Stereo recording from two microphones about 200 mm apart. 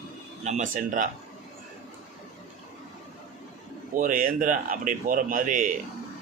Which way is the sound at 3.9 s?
45° right (ahead or behind).